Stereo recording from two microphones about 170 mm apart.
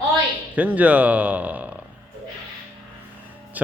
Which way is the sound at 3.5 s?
10° right (ahead or behind).